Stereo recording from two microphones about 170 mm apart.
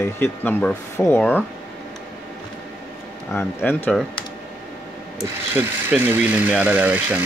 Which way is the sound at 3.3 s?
10° left (ahead or behind).